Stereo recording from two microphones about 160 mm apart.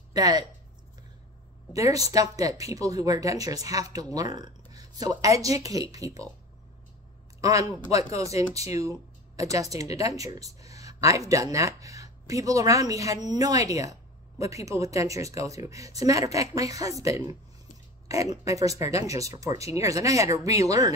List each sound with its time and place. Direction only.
0.1 s speech: 25° right (ahead or behind)
1.7 s speech: 20° right (ahead or behind)
7.3 s speech: 20° right (ahead or behind)